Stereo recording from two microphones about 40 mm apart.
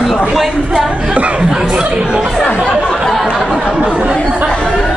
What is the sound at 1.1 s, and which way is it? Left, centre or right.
Speech, right.